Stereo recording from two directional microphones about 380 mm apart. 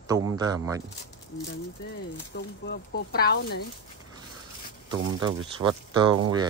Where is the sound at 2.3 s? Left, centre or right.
Left.